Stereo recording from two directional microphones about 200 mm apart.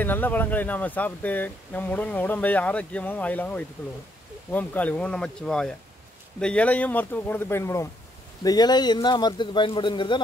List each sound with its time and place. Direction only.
0.0 s speech: 10° left (ahead or behind)